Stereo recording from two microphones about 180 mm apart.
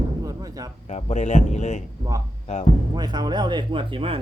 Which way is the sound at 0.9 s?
40° left (ahead or behind).